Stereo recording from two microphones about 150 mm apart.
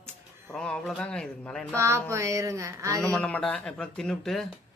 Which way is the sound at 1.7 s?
20° right (ahead or behind).